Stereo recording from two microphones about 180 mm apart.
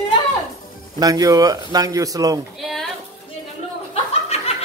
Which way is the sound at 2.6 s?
Centre (ahead or behind).